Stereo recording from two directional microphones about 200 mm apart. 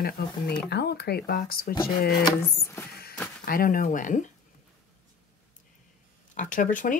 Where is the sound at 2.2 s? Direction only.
15° left (ahead or behind).